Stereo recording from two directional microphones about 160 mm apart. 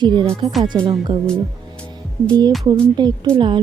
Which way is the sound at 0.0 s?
30° right (ahead or behind).